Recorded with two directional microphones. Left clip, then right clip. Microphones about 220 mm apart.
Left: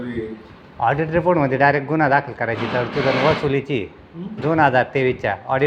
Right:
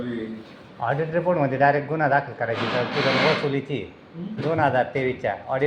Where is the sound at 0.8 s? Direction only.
50° left (ahead or behind).